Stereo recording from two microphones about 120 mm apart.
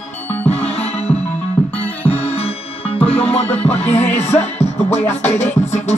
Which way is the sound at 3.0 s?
55° left (ahead or behind).